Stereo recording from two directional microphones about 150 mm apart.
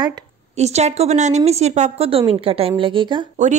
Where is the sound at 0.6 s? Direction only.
45° right (ahead or behind).